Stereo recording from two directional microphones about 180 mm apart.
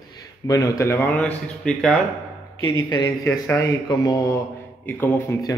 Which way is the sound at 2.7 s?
20° left (ahead or behind).